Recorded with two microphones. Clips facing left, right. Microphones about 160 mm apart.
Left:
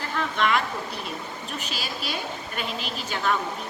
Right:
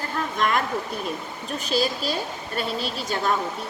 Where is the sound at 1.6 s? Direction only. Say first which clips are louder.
Right 14 dB; 40° right (ahead or behind).